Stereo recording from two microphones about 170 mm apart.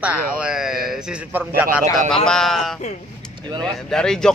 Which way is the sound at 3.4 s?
25° right (ahead or behind).